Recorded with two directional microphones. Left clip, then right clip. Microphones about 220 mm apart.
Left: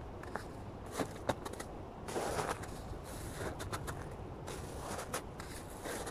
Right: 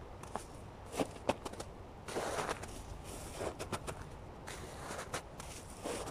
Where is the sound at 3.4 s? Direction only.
5° right (ahead or behind).